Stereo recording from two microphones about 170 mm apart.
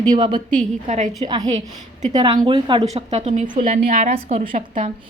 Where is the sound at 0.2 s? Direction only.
25° right (ahead or behind).